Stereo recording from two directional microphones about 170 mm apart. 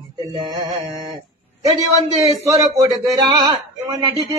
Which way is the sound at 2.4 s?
20° right (ahead or behind).